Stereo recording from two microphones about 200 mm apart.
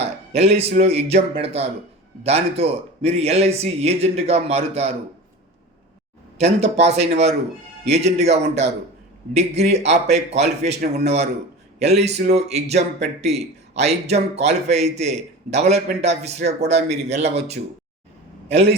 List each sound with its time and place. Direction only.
0.3 s a man's voice: 30° right (ahead or behind)
6.4 s a man's voice: 30° right (ahead or behind)